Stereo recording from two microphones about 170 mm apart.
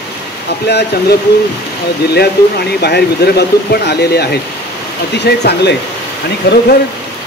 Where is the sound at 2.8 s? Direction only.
70° left (ahead or behind).